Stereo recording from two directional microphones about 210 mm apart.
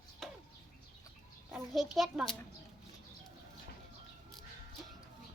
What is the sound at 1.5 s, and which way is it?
Speech, centre (ahead or behind).